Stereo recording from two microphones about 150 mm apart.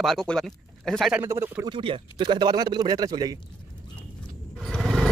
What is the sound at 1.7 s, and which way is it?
A man's voice, 35° right (ahead or behind).